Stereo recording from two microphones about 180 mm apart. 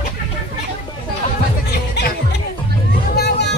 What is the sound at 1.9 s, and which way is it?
Music, 70° left (ahead or behind).